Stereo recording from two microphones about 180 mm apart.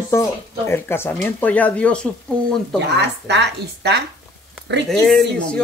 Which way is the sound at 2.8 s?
70° right (ahead or behind).